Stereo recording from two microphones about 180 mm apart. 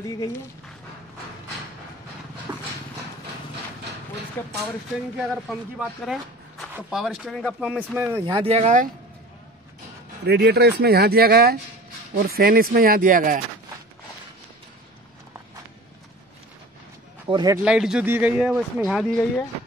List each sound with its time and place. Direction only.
2.5 s dog: 15° right (ahead or behind)
4.4 s speech: 10° left (ahead or behind)
5.3 s speech: centre (ahead or behind)
7.9 s speech: 10° right (ahead or behind)
8.3 s speech: 30° right (ahead or behind)
10.2 s speech: 65° right (ahead or behind)
17.3 s speech: 25° right (ahead or behind)
17.6 s speech: 5° right (ahead or behind)